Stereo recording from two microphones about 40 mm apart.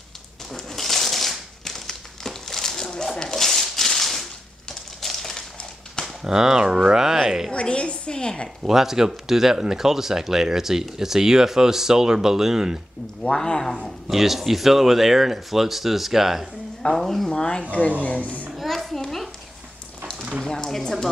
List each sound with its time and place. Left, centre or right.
0.5 s crumpling: centre
3.2 s a sound: centre
6.2 s speech: centre
7.5 s a woman's voice: left
8.6 s speech: centre
13.4 s speech: centre
14.0 s speech: centre
16.9 s speech: centre
17.3 s a woman's voice: centre
17.6 s a woman's voice: left
18.7 s a sound: centre
20.4 s speech: centre